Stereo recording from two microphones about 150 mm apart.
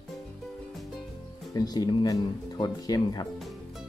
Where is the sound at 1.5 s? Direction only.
25° left (ahead or behind).